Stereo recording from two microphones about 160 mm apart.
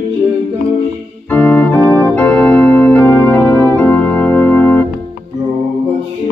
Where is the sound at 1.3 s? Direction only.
10° left (ahead or behind).